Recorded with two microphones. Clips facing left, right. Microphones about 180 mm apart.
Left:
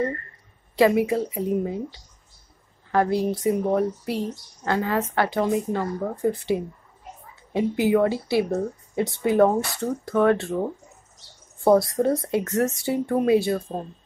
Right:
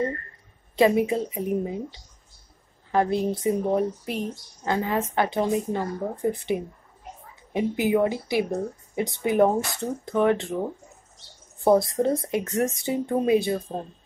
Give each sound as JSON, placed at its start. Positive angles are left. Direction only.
{"t": 0.7, "sound": "speech", "side_deg": -20}
{"t": 11.6, "sound": "speech", "side_deg": -20}